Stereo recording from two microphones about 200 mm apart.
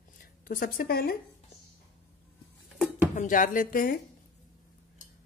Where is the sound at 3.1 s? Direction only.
40° left (ahead or behind).